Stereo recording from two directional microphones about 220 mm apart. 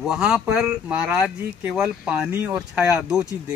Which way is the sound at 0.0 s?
5° right (ahead or behind).